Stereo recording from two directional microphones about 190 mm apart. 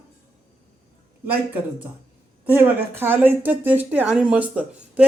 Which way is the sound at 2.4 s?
10° right (ahead or behind).